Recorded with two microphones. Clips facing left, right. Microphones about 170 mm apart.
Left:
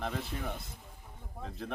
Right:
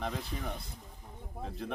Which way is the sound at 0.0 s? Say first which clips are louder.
Left 1 dB; centre (ahead or behind).